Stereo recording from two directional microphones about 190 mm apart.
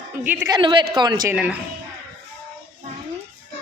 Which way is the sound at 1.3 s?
5° right (ahead or behind).